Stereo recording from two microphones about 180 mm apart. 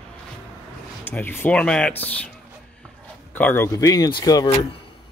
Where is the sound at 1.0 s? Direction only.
10° left (ahead or behind).